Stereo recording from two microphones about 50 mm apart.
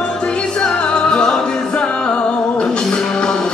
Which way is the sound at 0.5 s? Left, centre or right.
Centre.